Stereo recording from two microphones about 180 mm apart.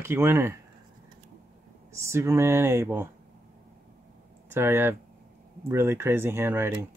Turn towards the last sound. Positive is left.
turn(degrees=-15)  # may be behind; listen again after turning